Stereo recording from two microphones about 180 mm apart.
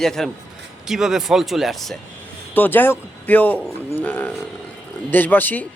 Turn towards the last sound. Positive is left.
turn(degrees=10)  # may be behind; listen again after turning